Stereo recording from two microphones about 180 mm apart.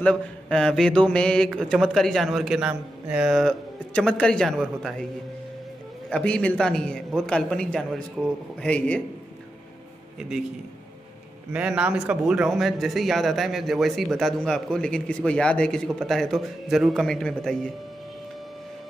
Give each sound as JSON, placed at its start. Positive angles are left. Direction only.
{"t": 0.0, "sound": "a man's voice", "side_deg": 5}
{"t": 6.0, "sound": "a man's voice", "side_deg": 5}
{"t": 11.5, "sound": "a man's voice", "side_deg": -5}